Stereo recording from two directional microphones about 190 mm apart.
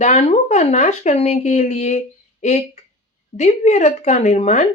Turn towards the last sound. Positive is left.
turn(degrees=40)  # may be behind; listen again after turning